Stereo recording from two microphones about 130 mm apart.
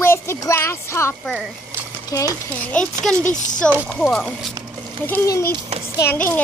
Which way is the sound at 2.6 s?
10° left (ahead or behind).